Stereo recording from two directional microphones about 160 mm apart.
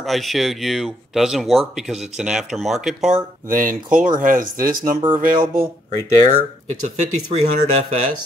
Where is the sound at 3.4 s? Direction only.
60° right (ahead or behind).